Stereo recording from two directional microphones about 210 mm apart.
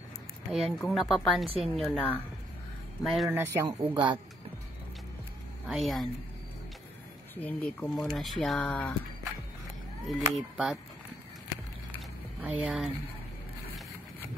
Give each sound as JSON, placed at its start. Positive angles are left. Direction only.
{"t": 0.8, "sound": "speech", "side_deg": 0}
{"t": 3.9, "sound": "speech", "side_deg": -20}
{"t": 5.7, "sound": "speech", "side_deg": 0}
{"t": 7.3, "sound": "speech", "side_deg": 5}
{"t": 12.4, "sound": "speech", "side_deg": -5}